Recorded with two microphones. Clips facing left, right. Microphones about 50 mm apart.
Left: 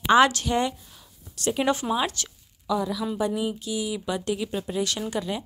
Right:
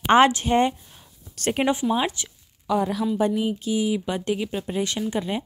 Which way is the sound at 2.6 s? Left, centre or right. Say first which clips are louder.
Right 3 dB; right.